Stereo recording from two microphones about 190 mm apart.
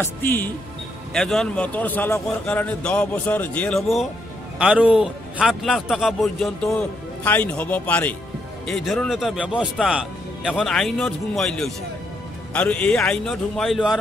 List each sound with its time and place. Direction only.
0.0 s a man's voice: 10° left (ahead or behind)